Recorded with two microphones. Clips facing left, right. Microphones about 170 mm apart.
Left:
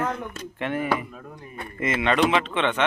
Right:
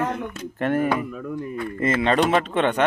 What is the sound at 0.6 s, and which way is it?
Speech, 45° right (ahead or behind).